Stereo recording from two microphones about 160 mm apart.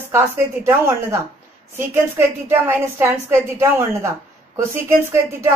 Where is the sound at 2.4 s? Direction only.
15° right (ahead or behind).